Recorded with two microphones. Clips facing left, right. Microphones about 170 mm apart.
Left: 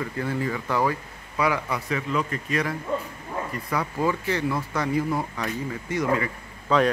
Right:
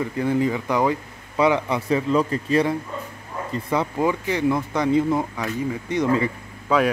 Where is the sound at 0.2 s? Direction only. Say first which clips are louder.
Right 7 dB; 15° right (ahead or behind).